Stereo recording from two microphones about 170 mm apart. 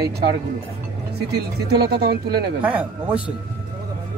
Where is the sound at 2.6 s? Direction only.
10° right (ahead or behind).